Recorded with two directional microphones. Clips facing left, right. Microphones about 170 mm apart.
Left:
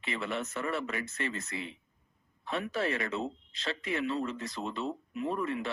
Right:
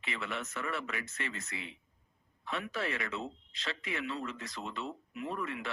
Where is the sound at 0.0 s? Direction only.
35° left (ahead or behind).